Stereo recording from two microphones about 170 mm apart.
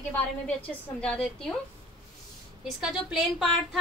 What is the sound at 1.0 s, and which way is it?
Speech, 5° left (ahead or behind).